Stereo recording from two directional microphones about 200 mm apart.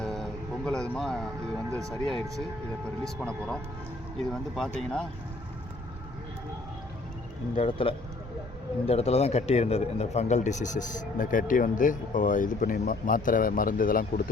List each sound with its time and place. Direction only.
0.0 s music: 5° left (ahead or behind)
1.9 s speech: centre (ahead or behind)
7.5 s a man's voice: 30° left (ahead or behind); by 14.0 s 45° left (ahead or behind)